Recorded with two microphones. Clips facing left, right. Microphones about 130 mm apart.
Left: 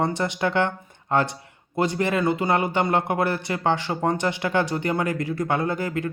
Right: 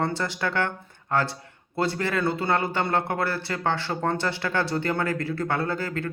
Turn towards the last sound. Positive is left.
turn(degrees=15)  # may be behind; listen again after turning